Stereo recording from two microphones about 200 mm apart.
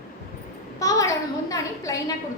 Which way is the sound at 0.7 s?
15° left (ahead or behind).